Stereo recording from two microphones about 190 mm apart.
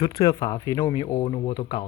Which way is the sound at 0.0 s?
20° left (ahead or behind).